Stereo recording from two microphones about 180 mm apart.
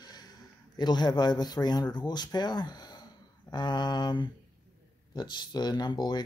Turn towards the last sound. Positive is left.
turn(degrees=25)  # may be behind; listen again after turning